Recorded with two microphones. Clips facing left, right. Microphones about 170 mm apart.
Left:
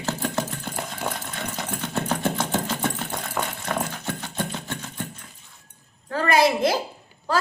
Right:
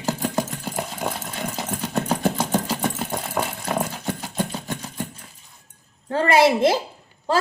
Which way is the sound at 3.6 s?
10° right (ahead or behind).